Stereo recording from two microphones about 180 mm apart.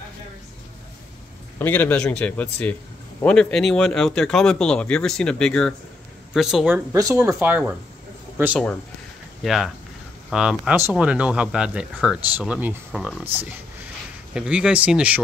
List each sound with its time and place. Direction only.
1.6 s speech: 10° left (ahead or behind)
6.9 s speech: 20° right (ahead or behind)
9.4 s speech: centre (ahead or behind)